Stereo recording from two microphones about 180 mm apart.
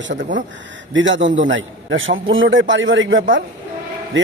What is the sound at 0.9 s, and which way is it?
A man's voice, 90° right.